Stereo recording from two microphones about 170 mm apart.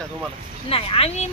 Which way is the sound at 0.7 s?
35° left (ahead or behind).